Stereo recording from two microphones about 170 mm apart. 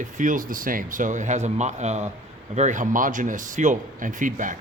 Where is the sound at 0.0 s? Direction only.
50° right (ahead or behind).